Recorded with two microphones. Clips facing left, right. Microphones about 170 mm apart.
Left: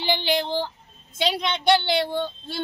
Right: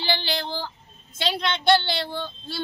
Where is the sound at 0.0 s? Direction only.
15° left (ahead or behind).